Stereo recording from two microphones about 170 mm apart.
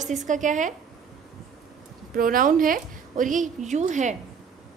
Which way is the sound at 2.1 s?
55° right (ahead or behind).